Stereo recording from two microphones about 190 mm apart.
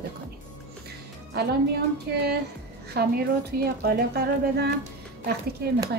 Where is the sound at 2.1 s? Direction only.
55° right (ahead or behind).